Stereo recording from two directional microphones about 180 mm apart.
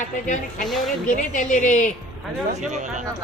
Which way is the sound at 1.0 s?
45° left (ahead or behind).